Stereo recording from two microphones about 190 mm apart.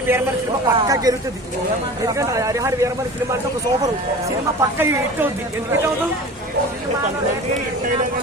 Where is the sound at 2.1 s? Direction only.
15° right (ahead or behind).